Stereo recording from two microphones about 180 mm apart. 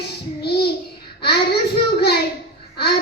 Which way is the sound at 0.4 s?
65° left (ahead or behind).